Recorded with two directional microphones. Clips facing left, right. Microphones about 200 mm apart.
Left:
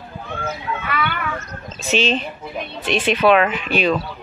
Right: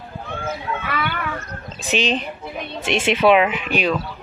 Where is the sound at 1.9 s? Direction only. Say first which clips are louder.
Left 2 dB; 15° right (ahead or behind).